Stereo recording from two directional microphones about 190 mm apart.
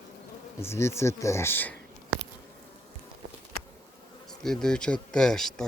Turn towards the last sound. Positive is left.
turn(degrees=0)  # may be behind; listen again after turning